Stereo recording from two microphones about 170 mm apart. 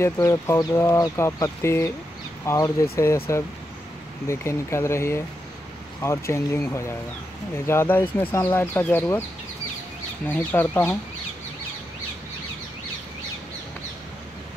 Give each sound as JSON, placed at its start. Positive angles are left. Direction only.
{"t": 0.0, "sound": "speech", "side_deg": 15}
{"t": 10.2, "sound": "speech", "side_deg": 10}